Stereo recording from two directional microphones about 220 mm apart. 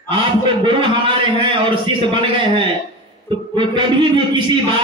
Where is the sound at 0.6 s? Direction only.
25° right (ahead or behind).